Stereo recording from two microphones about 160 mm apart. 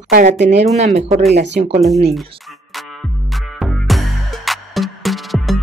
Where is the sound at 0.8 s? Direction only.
45° right (ahead or behind).